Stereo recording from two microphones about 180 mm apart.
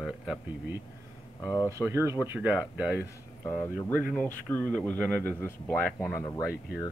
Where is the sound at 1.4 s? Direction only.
15° left (ahead or behind).